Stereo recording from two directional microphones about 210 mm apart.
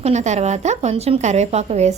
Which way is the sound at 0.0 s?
35° right (ahead or behind).